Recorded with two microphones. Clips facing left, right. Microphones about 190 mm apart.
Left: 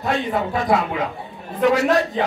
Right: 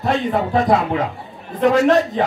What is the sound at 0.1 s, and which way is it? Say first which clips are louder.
Speech: right 4 dB; 20° right (ahead or behind).